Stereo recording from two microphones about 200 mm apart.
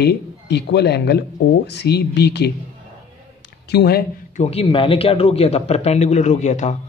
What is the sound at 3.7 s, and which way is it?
Speech, 55° left (ahead or behind).